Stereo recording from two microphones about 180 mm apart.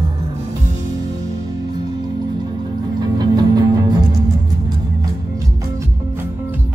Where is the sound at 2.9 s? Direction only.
20° right (ahead or behind).